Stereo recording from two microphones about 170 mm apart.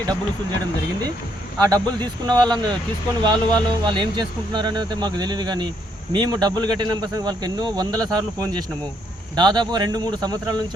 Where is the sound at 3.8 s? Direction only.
25° right (ahead or behind).